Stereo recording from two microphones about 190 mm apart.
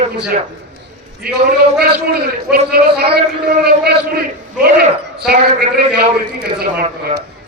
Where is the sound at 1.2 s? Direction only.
55° right (ahead or behind).